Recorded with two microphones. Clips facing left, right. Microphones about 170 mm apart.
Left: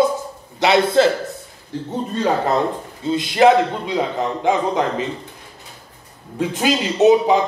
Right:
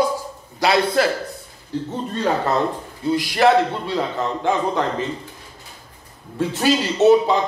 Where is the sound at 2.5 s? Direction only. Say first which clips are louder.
Left 2 dB; 20° left (ahead or behind).